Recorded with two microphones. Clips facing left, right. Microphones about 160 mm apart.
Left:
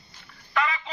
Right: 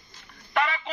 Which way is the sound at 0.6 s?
65° right (ahead or behind).